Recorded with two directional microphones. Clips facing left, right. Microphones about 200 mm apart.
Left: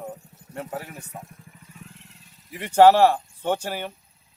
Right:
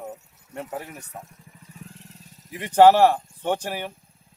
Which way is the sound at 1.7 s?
35° right (ahead or behind).